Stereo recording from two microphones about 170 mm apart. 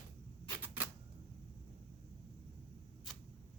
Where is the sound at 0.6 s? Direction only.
10° right (ahead or behind).